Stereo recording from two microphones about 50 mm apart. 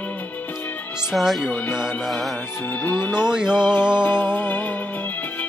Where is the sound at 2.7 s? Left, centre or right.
Left.